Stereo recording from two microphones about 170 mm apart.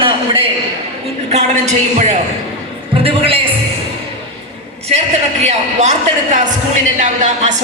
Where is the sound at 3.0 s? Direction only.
35° right (ahead or behind).